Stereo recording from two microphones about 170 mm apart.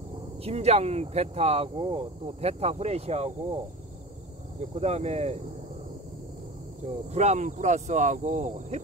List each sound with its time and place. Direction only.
0.4 s speech: 40° right (ahead or behind)
4.6 s speech: 40° right (ahead or behind)
7.1 s speech: 40° right (ahead or behind)